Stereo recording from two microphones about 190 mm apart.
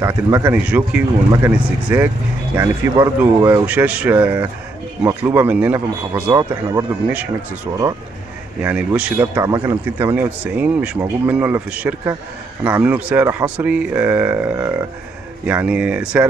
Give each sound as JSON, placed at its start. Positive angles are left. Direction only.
{"t": 0.0, "sound": "speech", "side_deg": -20}
{"t": 0.5, "sound": "a man's voice", "side_deg": -10}
{"t": 6.3, "sound": "speech", "side_deg": -20}
{"t": 8.6, "sound": "a man's voice", "side_deg": -5}